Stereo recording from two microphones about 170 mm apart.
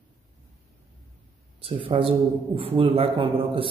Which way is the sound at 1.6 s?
35° right (ahead or behind).